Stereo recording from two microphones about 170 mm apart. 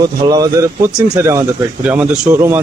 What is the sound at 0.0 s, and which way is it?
Speech, 20° right (ahead or behind).